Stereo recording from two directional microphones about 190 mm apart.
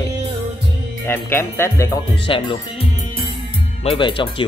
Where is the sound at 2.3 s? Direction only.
30° left (ahead or behind).